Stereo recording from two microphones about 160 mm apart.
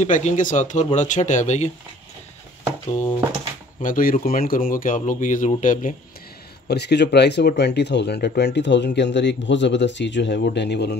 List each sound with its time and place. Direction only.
0.0 s speech: 50° left (ahead or behind)
3.8 s speech: 60° left (ahead or behind)
6.7 s speech: 90° left